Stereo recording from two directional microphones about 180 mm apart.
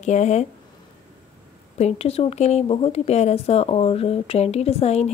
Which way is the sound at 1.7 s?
35° left (ahead or behind).